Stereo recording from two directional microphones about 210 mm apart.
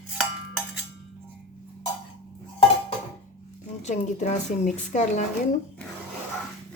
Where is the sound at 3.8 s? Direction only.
35° left (ahead or behind).